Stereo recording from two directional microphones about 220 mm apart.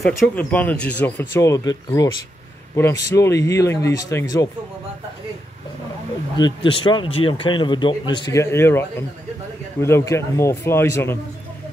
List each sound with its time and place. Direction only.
0.0 s speech: 5° left (ahead or behind)
6.3 s speech: 20° left (ahead or behind)